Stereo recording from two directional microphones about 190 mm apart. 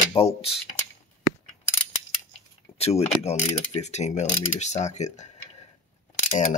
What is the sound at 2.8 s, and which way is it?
Speech, 35° left (ahead or behind).